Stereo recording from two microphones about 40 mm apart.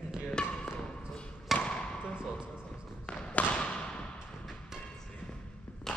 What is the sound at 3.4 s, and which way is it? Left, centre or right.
Basketball bounce, left.